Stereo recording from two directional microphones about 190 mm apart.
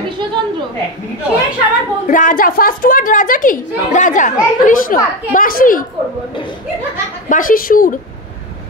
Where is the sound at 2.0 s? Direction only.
45° left (ahead or behind).